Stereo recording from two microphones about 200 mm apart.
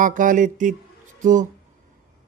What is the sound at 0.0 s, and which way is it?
Mantra, 40° right (ahead or behind).